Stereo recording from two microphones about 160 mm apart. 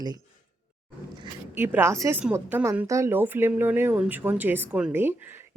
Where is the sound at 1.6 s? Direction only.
15° right (ahead or behind).